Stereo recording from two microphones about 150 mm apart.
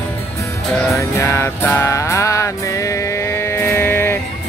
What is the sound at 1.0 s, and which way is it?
Music, 20° left (ahead or behind).